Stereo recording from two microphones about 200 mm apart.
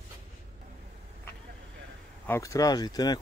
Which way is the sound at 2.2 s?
15° left (ahead or behind).